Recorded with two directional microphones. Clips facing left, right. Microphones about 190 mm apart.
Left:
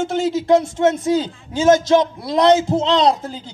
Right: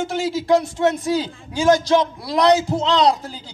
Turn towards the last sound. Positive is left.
turn(degrees=20)  # may be behind; listen again after turning